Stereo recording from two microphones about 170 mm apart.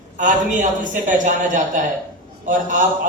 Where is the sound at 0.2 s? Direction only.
50° right (ahead or behind).